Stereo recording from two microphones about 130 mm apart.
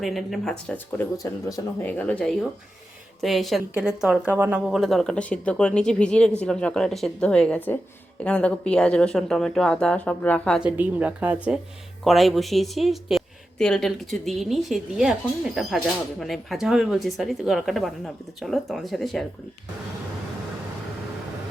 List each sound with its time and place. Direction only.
0.0 s a woman's voice: centre (ahead or behind)
0.9 s speech: 25° left (ahead or behind)
1.8 s a woman's voice: 10° left (ahead or behind)
10.6 s a woman's voice: 10° right (ahead or behind)
12.0 s a woman's voice: centre (ahead or behind)